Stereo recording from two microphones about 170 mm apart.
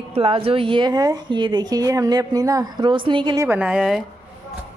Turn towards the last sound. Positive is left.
turn(degrees=0)  # may be behind; listen again after turning